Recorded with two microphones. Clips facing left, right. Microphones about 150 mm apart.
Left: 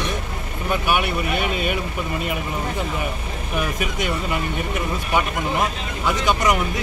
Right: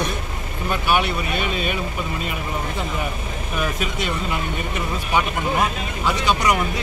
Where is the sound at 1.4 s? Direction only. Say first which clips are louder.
Left 1 dB; 65° left (ahead or behind).